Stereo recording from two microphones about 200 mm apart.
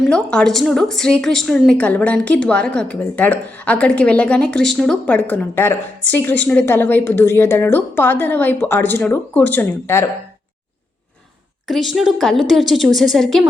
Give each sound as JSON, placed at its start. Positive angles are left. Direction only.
{"t": 0.1, "sound": "a woman's voice", "side_deg": 5}
{"t": 11.7, "sound": "a woman's voice", "side_deg": 0}